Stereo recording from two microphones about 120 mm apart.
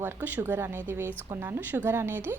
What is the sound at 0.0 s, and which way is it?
A woman's voice, 15° right (ahead or behind).